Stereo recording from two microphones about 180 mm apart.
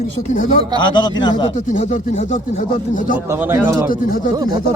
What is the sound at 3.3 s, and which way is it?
Speech, 10° right (ahead or behind).